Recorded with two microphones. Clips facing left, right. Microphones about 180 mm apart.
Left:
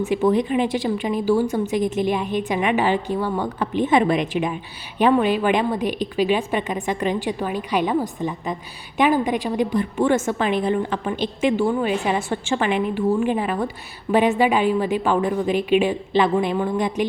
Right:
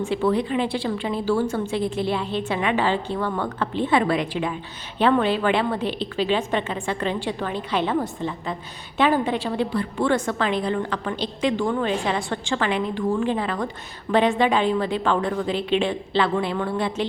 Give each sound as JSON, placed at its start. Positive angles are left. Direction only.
{"t": 0.1, "sound": "a woman's voice", "side_deg": 20}